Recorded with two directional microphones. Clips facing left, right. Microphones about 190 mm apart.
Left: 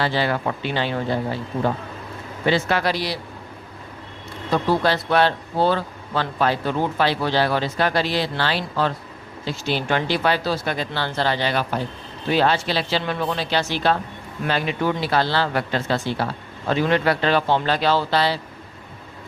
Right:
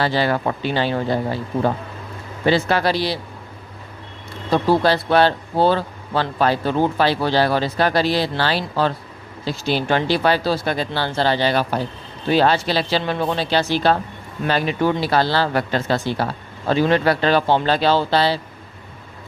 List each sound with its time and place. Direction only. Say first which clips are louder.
0.0 s a man's voice: right 3 dB; 40° right (ahead or behind)
2.5 s a man's voice: right 3 dB; 35° right (ahead or behind)
4.5 s a man's voice: right 3 dB; 35° right (ahead or behind)